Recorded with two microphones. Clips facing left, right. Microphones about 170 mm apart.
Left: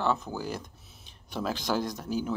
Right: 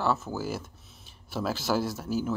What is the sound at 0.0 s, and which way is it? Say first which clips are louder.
Speech: right 1 dB; 5° right (ahead or behind).